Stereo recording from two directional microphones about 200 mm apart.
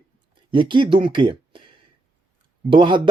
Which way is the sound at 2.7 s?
25° right (ahead or behind).